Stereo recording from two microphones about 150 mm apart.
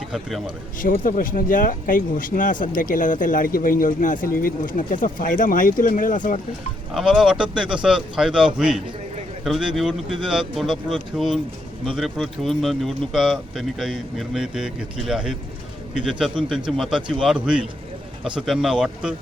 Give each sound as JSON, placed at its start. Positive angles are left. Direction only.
{"t": 0.1, "sound": "speech", "side_deg": 0}
{"t": 0.8, "sound": "speech", "side_deg": 65}
{"t": 6.9, "sound": "speech", "side_deg": -5}